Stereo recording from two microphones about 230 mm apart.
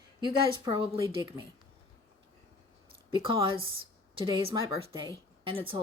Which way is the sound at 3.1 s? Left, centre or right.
Right.